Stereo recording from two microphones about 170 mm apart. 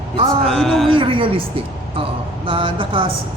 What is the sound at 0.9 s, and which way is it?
A man's voice, 30° right (ahead or behind).